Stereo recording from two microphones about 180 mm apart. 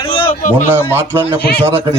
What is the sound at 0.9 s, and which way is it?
Speech, 10° right (ahead or behind).